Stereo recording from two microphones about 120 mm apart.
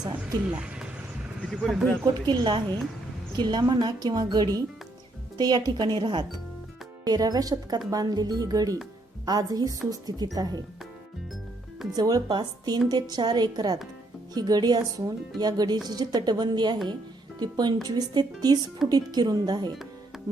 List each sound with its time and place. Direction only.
0.4 s speech: 10° right (ahead or behind)
2.2 s a woman's voice: 40° right (ahead or behind)
11.9 s a woman's voice: 35° right (ahead or behind)
20.1 s music: centre (ahead or behind)